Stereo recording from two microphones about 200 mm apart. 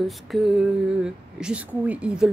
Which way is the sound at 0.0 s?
Centre (ahead or behind).